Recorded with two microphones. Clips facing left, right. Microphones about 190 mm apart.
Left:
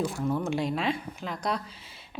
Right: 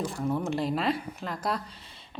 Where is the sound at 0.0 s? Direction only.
Centre (ahead or behind).